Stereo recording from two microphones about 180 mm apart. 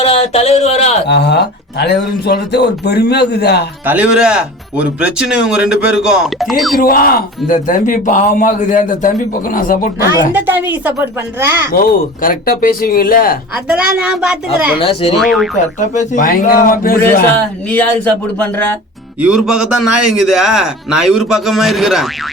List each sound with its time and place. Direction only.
0.0 s speech: 35° left (ahead or behind)
1.0 s speech: 70° left (ahead or behind)
3.8 s speech: 5° right (ahead or behind)
6.7 s speech: 55° left (ahead or behind)
10.3 s speech: 10° right (ahead or behind)
11.7 s speech: 50° left (ahead or behind)
14.0 s speech: 5° right (ahead or behind)
14.8 s speech: 30° left (ahead or behind)
15.2 s speech: centre (ahead or behind)
15.5 s speech: 40° left (ahead or behind)
17.7 s speech: 10° left (ahead or behind)
19.2 s speech: 5° right (ahead or behind)